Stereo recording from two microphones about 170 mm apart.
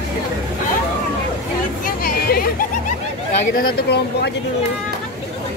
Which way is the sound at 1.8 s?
65° left (ahead or behind).